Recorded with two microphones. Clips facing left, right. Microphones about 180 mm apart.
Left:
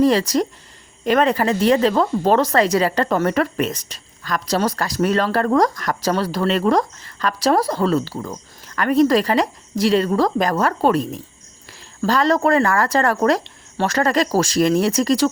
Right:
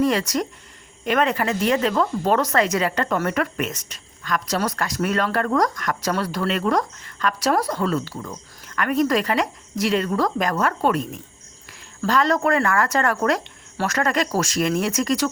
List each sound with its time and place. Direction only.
0.0 s speech: 30° left (ahead or behind)